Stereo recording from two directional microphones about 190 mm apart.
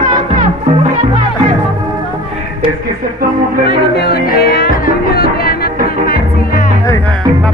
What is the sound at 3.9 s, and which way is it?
Music, 60° left (ahead or behind).